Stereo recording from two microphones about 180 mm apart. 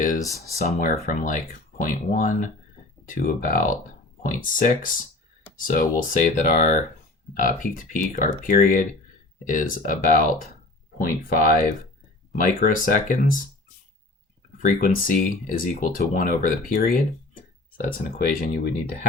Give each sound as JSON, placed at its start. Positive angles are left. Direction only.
{"t": 0.2, "sound": "speech", "side_deg": 20}
{"t": 0.6, "sound": "speech", "side_deg": 50}
{"t": 14.6, "sound": "speech", "side_deg": 50}
{"t": 18.3, "sound": "speech", "side_deg": 50}